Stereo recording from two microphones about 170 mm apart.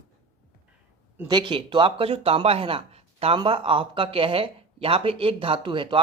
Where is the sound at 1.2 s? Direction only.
30° right (ahead or behind).